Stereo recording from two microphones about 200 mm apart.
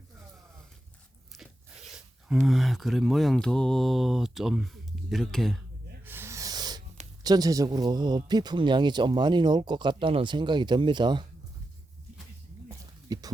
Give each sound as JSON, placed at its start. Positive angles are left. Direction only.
{"t": 1.9, "sound": "speech", "side_deg": 0}
{"t": 6.1, "sound": "rub", "side_deg": -10}
{"t": 7.3, "sound": "speech", "side_deg": -20}
{"t": 12.6, "sound": "a sound", "side_deg": -20}